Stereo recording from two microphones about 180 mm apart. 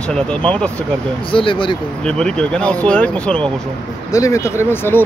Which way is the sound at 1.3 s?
30° left (ahead or behind).